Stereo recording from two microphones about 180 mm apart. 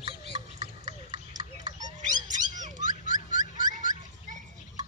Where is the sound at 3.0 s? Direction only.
45° left (ahead or behind).